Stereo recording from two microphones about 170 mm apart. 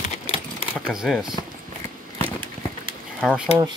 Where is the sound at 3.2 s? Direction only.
5° right (ahead or behind).